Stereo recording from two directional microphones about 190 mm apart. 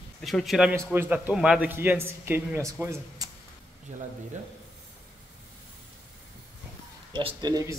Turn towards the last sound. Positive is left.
turn(degrees=-20)  # may be behind; listen again after turning